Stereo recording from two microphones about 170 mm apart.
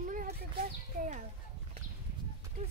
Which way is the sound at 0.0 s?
50° right (ahead or behind).